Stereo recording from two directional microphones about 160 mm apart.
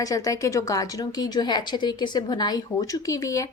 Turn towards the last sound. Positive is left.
turn(degrees=20)  # may be behind; listen again after turning